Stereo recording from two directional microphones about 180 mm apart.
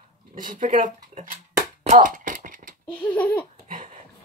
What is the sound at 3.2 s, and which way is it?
Laughter, 10° left (ahead or behind).